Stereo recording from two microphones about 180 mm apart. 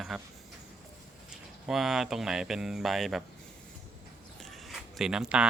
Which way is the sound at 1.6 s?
Centre (ahead or behind).